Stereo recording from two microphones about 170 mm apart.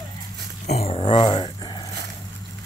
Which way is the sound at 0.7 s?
35° left (ahead or behind).